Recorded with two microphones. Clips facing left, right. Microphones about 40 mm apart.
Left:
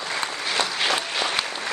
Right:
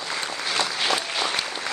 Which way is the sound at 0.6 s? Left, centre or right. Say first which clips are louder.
Left 1 dB; left.